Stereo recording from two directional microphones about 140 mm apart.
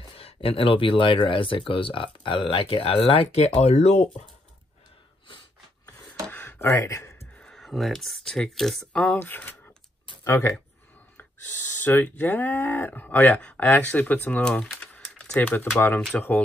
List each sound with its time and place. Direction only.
0.0 s speech: 40° left (ahead or behind)
6.2 s a sound: 15° left (ahead or behind)
7.3 s speech: 5° left (ahead or behind); by 10.5 s 20° left (ahead or behind)
11.8 s speech: 15° left (ahead or behind)